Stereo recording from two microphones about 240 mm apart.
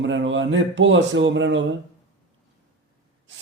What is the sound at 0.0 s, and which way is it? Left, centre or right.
Speech, right.